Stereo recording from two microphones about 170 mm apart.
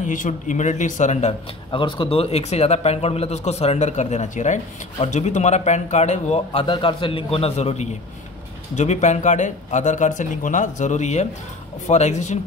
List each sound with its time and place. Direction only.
0.0 s a man's voice: 50° left (ahead or behind)